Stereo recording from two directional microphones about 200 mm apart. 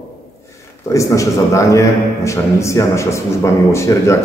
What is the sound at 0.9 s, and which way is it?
A man's voice, 15° left (ahead or behind).